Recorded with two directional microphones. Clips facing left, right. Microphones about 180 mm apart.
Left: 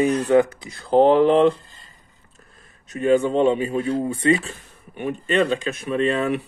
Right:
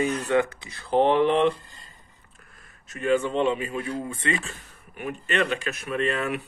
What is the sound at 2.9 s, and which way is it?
Speech, 35° left (ahead or behind).